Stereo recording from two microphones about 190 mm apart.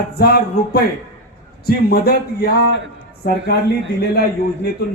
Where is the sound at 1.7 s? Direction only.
55° left (ahead or behind).